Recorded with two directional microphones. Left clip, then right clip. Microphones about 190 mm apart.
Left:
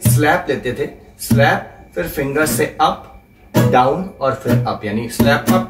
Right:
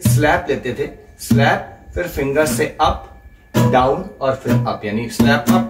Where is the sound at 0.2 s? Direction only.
15° right (ahead or behind).